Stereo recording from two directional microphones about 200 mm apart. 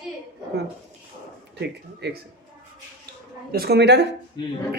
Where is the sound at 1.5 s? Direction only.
55° right (ahead or behind).